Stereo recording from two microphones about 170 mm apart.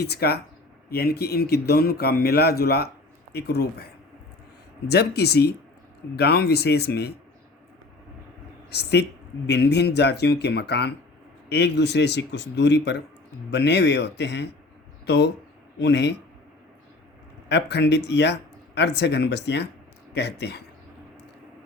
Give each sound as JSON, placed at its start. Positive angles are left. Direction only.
{"t": 0.0, "sound": "speech", "side_deg": 70}
{"t": 8.7, "sound": "speech", "side_deg": 75}
{"t": 17.5, "sound": "speech", "side_deg": 85}